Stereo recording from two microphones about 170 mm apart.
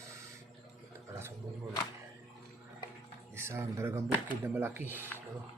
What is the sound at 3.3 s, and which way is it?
Speech, 15° right (ahead or behind).